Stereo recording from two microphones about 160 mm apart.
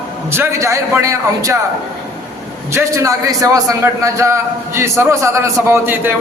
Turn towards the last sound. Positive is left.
turn(degrees=-15)  # may be behind; listen again after turning